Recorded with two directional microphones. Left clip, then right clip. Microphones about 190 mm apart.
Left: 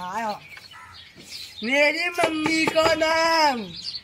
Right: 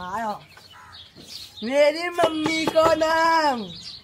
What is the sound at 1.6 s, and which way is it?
Speech, centre (ahead or behind).